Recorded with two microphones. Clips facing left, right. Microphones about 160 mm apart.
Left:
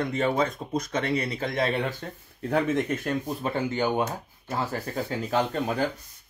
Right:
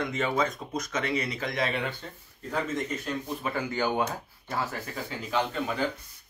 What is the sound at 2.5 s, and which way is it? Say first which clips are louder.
Speech: left 6 dB; 60° left (ahead or behind).